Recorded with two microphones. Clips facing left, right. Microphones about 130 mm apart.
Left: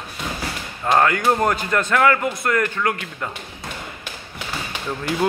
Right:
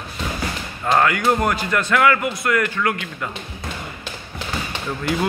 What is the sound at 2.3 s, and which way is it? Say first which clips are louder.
Speech: even; 45° left (ahead or behind).